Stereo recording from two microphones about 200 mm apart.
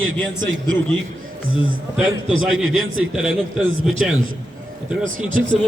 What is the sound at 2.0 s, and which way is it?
A man's voice, 5° right (ahead or behind).